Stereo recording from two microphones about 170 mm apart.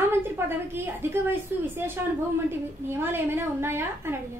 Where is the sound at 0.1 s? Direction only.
15° right (ahead or behind).